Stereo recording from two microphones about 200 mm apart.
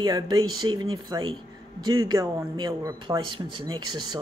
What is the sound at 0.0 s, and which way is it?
A man's voice, 20° right (ahead or behind).